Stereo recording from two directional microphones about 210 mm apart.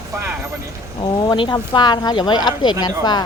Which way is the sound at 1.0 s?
20° left (ahead or behind).